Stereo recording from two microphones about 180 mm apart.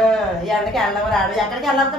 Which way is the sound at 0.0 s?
Centre (ahead or behind).